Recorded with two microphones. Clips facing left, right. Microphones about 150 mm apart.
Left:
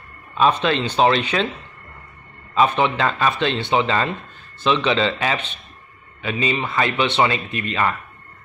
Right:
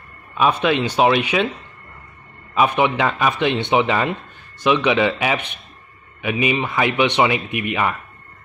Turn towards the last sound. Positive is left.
turn(degrees=-15)  # may be behind; listen again after turning